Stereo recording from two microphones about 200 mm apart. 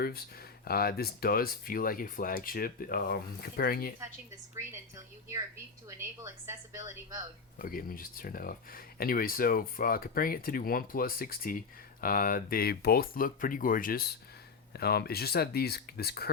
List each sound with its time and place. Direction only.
0.0 s speech: 50° left (ahead or behind)
5.9 s a woman's voice: 15° right (ahead or behind)
7.6 s speech: 45° left (ahead or behind)